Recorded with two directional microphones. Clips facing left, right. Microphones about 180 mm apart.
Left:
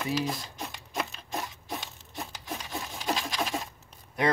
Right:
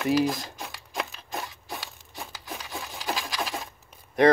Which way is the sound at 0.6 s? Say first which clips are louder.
Even; centre (ahead or behind).